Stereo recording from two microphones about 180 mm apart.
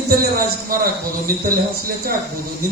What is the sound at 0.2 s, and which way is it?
Speech, 55° right (ahead or behind).